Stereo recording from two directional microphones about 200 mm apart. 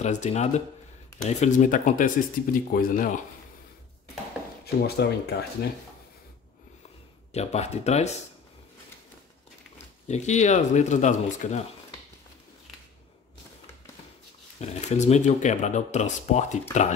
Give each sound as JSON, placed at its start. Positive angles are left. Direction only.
{"t": 0.0, "sound": "speech", "side_deg": 35}
{"t": 4.6, "sound": "speech", "side_deg": 55}
{"t": 7.3, "sound": "speech", "side_deg": 35}
{"t": 10.0, "sound": "speech", "side_deg": 35}
{"t": 14.8, "sound": "speech", "side_deg": 35}